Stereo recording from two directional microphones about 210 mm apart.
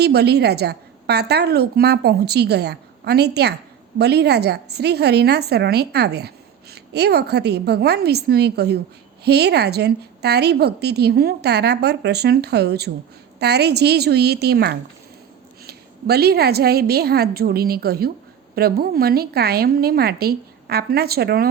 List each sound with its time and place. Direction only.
0.0 s a woman's voice: 50° right (ahead or behind)